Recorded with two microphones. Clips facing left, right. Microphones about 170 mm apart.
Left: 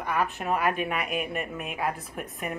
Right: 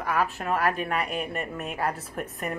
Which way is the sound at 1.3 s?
35° right (ahead or behind).